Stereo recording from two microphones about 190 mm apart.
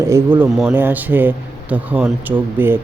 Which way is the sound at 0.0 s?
10° right (ahead or behind).